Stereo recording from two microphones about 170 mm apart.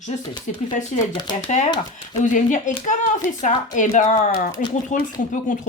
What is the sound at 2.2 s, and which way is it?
Speech, 50° left (ahead or behind).